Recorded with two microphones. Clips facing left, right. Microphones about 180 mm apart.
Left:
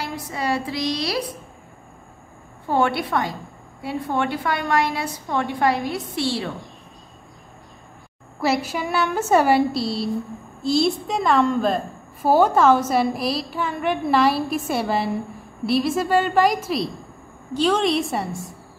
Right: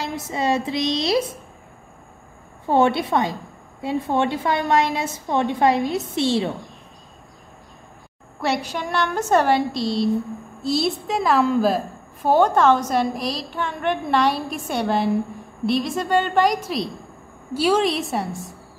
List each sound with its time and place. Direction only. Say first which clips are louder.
0.0 s a woman's voice: right 3 dB; 20° right (ahead or behind)
2.7 s a woman's voice: right 3 dB; 20° right (ahead or behind)
8.4 s a woman's voice: left 2 dB; 5° left (ahead or behind)